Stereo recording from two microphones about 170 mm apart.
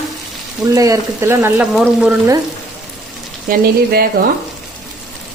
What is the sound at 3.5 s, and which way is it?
Speech, 65° right (ahead or behind).